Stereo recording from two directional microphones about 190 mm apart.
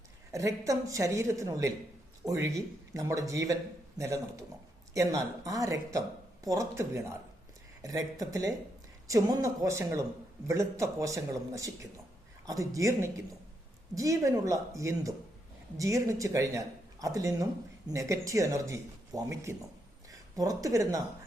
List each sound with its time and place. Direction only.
0.3 s a man's voice: 15° right (ahead or behind)